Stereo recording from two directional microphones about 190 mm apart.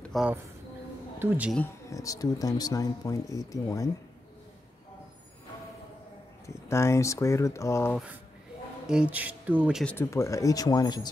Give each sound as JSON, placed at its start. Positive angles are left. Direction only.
{"t": 0.0, "sound": "speech", "side_deg": 0}
{"t": 1.9, "sound": "speech", "side_deg": 15}
{"t": 6.4, "sound": "speech", "side_deg": 15}
{"t": 8.8, "sound": "speech", "side_deg": -5}
{"t": 9.8, "sound": "speech", "side_deg": 15}